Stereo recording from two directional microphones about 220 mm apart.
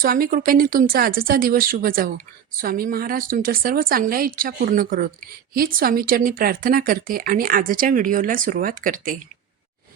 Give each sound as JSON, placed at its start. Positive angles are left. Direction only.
{"t": 0.0, "sound": "speech", "side_deg": -40}